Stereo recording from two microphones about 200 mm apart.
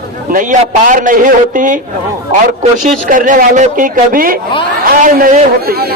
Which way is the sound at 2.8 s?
40° right (ahead or behind).